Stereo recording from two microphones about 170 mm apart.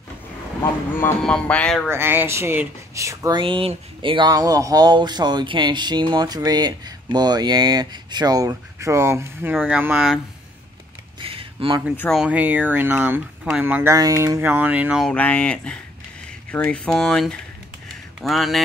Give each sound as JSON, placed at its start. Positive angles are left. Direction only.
{"t": 0.9, "sound": "speech", "side_deg": 10}
{"t": 1.9, "sound": "speech", "side_deg": -15}
{"t": 11.1, "sound": "a sound", "side_deg": -30}
{"t": 12.1, "sound": "speech", "side_deg": -5}
{"t": 13.9, "sound": "speech", "side_deg": -20}
{"t": 15.0, "sound": "speech", "side_deg": 5}